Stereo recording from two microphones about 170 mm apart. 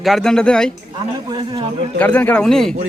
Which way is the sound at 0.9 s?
25° right (ahead or behind).